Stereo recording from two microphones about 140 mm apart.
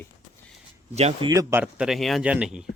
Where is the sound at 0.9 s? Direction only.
50° right (ahead or behind).